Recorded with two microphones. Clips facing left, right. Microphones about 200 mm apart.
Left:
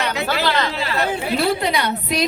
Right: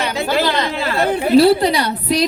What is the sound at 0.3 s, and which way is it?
Chatter, 15° right (ahead or behind).